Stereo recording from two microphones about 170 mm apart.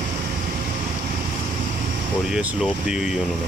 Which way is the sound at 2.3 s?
5° right (ahead or behind).